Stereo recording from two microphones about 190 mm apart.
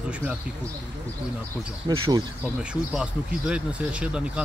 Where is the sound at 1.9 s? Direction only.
25° right (ahead or behind).